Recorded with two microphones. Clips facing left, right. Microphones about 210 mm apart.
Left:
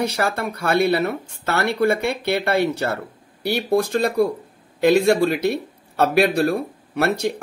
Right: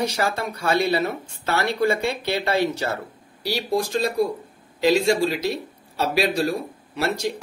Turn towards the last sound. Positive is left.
turn(degrees=60)  # may be behind; listen again after turning